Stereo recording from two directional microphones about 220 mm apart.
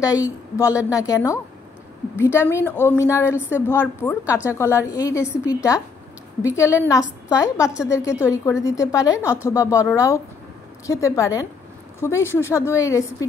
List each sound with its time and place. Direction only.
0.0 s a woman's voice: 15° left (ahead or behind)